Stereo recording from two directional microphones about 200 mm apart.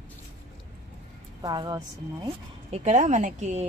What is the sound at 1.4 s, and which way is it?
Speech, 20° right (ahead or behind).